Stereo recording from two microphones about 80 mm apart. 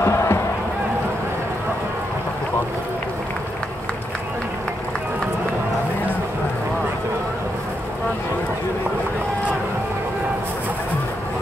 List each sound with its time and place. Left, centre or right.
0.0 s music: left